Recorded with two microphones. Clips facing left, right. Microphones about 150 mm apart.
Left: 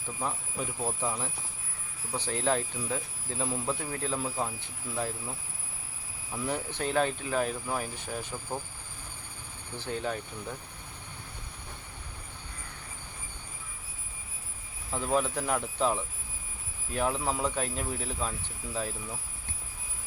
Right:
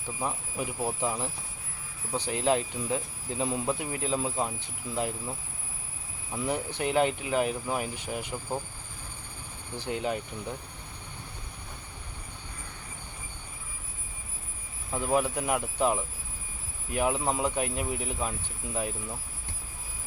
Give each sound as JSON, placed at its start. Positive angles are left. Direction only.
{"t": 0.2, "sound": "speech", "side_deg": -10}
{"t": 6.3, "sound": "speech", "side_deg": -15}
{"t": 9.7, "sound": "speech", "side_deg": -15}
{"t": 14.9, "sound": "speech", "side_deg": -10}